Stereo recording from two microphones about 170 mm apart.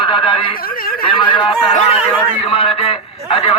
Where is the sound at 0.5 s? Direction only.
60° left (ahead or behind).